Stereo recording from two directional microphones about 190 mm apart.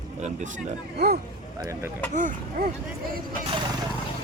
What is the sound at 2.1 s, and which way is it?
Speech, 45° right (ahead or behind).